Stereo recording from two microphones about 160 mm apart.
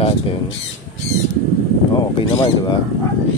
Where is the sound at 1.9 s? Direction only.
30° left (ahead or behind).